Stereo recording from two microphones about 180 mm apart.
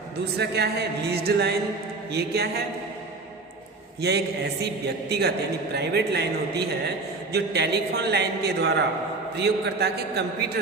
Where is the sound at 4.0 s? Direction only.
70° right (ahead or behind).